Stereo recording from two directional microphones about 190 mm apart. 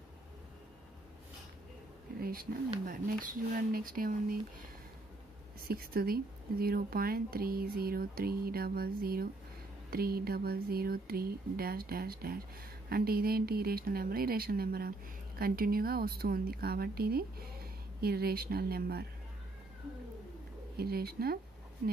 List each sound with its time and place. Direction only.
2.1 s a sound: 50° right (ahead or behind)
2.8 s speech: 45° right (ahead or behind)
5.6 s speech: 50° right (ahead or behind)
20.7 s speech: 55° right (ahead or behind)